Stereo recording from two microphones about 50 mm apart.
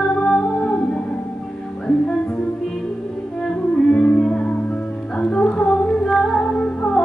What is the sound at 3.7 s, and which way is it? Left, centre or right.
Music, left.